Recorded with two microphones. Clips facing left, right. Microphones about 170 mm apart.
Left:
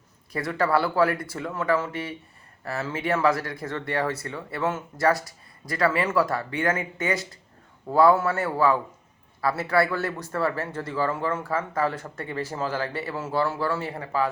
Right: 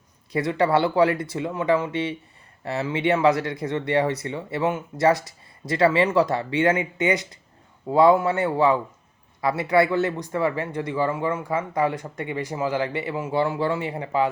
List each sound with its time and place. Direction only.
0.3 s a man's voice: 20° right (ahead or behind)